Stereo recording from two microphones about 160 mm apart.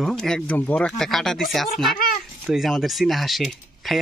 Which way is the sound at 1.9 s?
60° left (ahead or behind).